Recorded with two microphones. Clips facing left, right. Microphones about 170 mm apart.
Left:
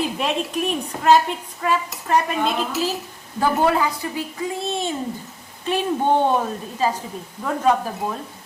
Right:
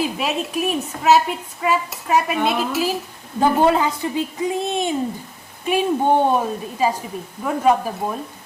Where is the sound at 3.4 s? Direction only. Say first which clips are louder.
Right 3 dB; 25° right (ahead or behind).